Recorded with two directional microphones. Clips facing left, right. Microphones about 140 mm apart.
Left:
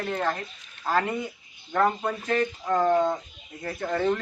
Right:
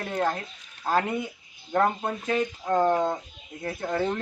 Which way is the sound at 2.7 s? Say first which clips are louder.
Even; 25° right (ahead or behind).